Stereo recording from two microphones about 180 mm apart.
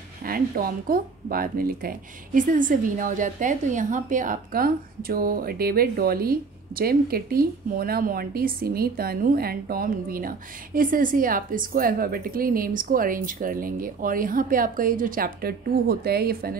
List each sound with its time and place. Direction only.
0.2 s speech: 55° right (ahead or behind)